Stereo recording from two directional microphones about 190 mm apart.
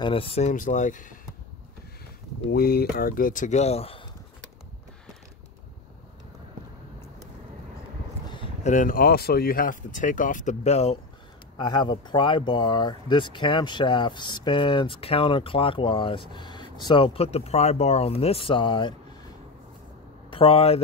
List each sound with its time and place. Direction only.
0.0 s speech: 30° left (ahead or behind)
2.5 s speech: 55° left (ahead or behind); by 4.1 s 30° left (ahead or behind)
8.6 s speech: 45° left (ahead or behind)
11.5 s speech: 20° left (ahead or behind)
20.2 s speech: 30° left (ahead or behind)